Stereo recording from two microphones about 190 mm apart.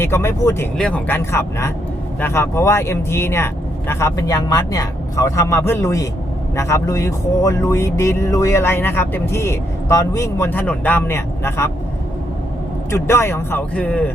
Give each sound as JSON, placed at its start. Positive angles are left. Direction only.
{"t": 0.0, "sound": "speech", "side_deg": 10}
{"t": 12.9, "sound": "speech", "side_deg": 15}